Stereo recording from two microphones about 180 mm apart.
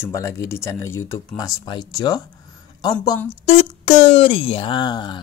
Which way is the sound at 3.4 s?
40° left (ahead or behind).